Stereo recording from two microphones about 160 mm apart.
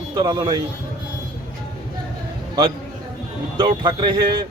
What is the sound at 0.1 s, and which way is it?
Speech, 25° right (ahead or behind).